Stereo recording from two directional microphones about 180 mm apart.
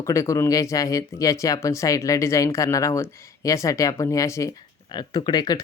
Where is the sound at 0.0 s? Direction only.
15° left (ahead or behind).